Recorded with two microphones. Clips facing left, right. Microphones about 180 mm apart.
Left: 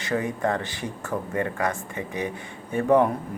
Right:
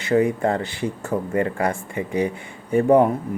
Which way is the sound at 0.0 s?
25° right (ahead or behind).